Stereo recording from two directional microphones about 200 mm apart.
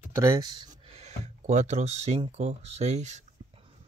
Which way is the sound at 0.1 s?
15° right (ahead or behind).